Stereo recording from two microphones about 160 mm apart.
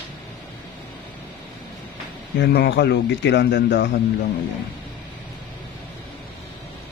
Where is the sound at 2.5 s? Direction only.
90° left.